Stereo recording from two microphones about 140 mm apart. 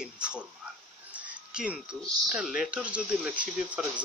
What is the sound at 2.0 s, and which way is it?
Speech, centre (ahead or behind).